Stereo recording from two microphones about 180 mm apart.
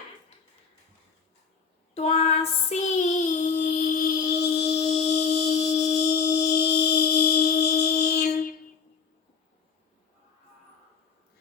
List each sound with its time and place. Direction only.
2.0 s child singing: 35° left (ahead or behind); by 4.9 s 65° left (ahead or behind)
5.0 s music: 70° left (ahead or behind)
5.9 s a sound: 65° left (ahead or behind)